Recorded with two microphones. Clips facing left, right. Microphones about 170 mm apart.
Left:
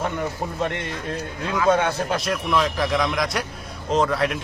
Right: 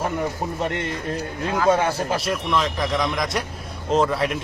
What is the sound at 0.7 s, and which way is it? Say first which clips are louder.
Speech: right 3 dB; 50° right (ahead or behind).